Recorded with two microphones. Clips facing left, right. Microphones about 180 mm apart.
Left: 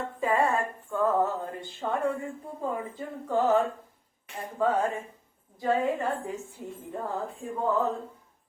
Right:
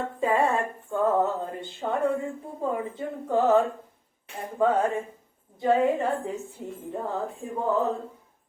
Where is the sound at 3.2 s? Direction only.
20° right (ahead or behind).